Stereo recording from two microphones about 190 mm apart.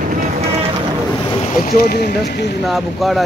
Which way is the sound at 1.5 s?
50° left (ahead or behind).